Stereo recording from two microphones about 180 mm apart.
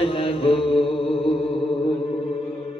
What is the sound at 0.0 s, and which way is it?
Mantra, 30° left (ahead or behind).